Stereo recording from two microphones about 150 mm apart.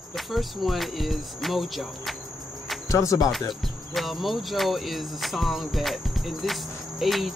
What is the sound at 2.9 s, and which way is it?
Speech, 20° left (ahead or behind).